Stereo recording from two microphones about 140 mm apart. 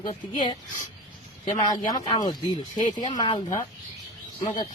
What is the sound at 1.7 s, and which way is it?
Speech, 25° left (ahead or behind).